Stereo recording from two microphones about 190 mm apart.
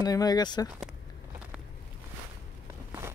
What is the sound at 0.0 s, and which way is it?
Speech, 20° left (ahead or behind).